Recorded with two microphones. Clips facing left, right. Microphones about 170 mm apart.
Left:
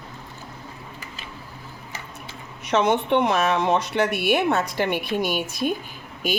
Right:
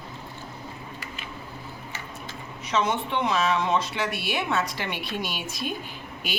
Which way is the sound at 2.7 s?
60° left (ahead or behind).